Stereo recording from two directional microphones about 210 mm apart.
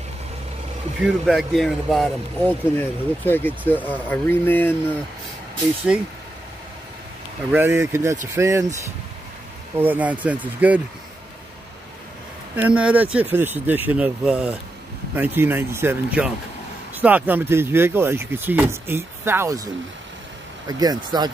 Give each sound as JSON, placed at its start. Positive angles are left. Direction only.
{"t": 1.0, "sound": "speech", "side_deg": 0}
{"t": 7.5, "sound": "speech", "side_deg": -10}
{"t": 9.8, "sound": "speech", "side_deg": -10}
{"t": 12.5, "sound": "speech", "side_deg": -5}